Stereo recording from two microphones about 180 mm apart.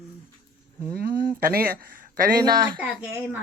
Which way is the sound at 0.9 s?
55° right (ahead or behind).